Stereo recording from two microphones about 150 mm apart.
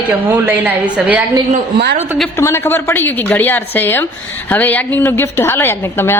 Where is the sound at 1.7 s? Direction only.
90° right.